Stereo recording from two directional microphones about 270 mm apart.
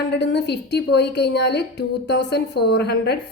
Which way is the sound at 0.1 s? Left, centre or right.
Left.